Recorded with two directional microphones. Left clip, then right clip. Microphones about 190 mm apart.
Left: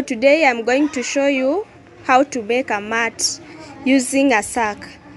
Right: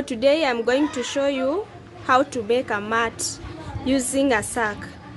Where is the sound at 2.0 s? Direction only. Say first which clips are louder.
Left 4 dB; 25° left (ahead or behind).